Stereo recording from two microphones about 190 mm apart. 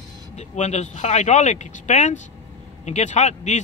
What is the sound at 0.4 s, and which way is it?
A man's voice, 35° left (ahead or behind).